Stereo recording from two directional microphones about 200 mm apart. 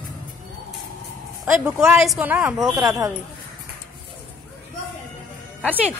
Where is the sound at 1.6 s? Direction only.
5° right (ahead or behind).